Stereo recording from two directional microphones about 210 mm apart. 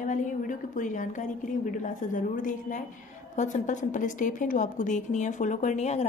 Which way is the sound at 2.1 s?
40° left (ahead or behind).